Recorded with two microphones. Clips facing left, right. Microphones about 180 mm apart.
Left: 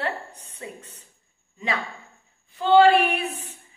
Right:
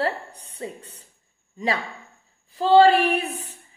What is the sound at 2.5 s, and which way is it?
Speech, 35° right (ahead or behind).